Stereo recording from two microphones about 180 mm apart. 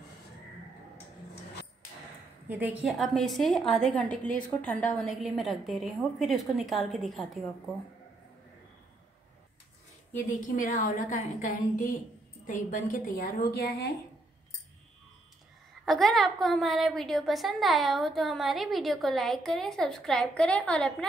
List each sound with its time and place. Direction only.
2.4 s a woman's voice: 10° right (ahead or behind)
10.5 s a woman's voice: 45° left (ahead or behind); by 13.8 s 65° left (ahead or behind)
15.8 s a woman's voice: centre (ahead or behind)